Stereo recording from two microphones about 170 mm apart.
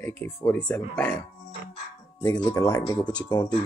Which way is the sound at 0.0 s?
10° left (ahead or behind).